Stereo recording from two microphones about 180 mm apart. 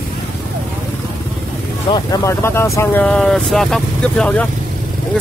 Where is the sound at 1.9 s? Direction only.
20° left (ahead or behind).